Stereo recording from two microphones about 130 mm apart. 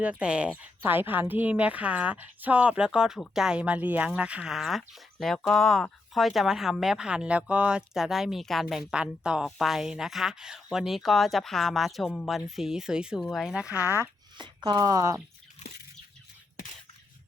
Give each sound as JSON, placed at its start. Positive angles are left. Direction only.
{"t": 0.0, "sound": "speech", "side_deg": -10}
{"t": 14.3, "sound": "speech", "side_deg": -35}
{"t": 15.6, "sound": "bird flight", "side_deg": 60}